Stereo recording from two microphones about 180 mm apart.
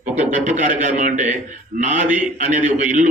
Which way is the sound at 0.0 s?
45° right (ahead or behind).